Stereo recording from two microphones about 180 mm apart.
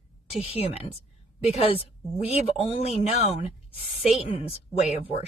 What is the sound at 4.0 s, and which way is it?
A woman's voice, 35° left (ahead or behind).